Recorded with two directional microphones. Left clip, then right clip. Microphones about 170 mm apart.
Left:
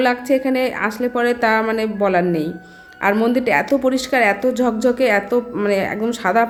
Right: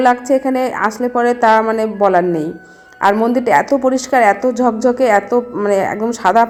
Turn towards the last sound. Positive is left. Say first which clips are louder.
# right 5 dB
turn(degrees=15)  # may be behind; listen again after turning